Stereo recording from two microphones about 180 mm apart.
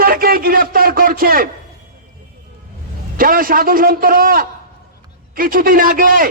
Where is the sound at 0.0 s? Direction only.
55° right (ahead or behind).